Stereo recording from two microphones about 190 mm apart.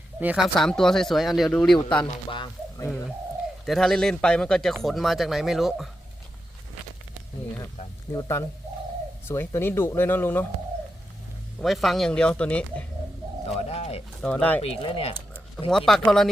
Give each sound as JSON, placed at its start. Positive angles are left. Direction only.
{"t": 0.2, "sound": "speech", "side_deg": -5}
{"t": 2.0, "sound": "speech", "side_deg": 25}
{"t": 3.7, "sound": "speech", "side_deg": 0}
{"t": 8.1, "sound": "speech", "side_deg": 15}
{"t": 11.6, "sound": "speech", "side_deg": 0}
{"t": 13.6, "sound": "a sound", "side_deg": 35}
{"t": 14.2, "sound": "speech", "side_deg": 5}
{"t": 14.6, "sound": "speech", "side_deg": 30}
{"t": 15.9, "sound": "speech", "side_deg": 0}